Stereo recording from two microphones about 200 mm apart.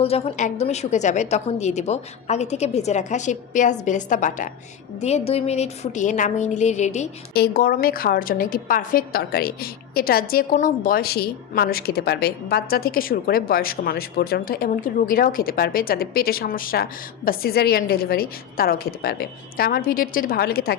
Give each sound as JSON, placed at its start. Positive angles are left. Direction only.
{"t": 0.0, "sound": "a woman's voice", "side_deg": 30}
{"t": 7.3, "sound": "a woman's voice", "side_deg": 50}